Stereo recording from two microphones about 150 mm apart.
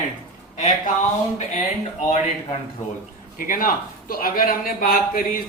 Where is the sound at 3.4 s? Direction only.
65° left (ahead or behind).